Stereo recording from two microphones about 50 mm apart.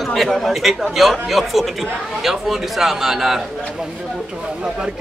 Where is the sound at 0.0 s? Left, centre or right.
Centre.